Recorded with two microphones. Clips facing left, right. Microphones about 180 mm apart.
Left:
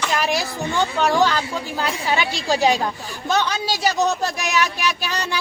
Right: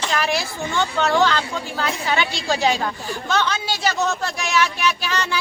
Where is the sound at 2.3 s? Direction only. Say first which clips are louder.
Left 5 dB; 40° left (ahead or behind).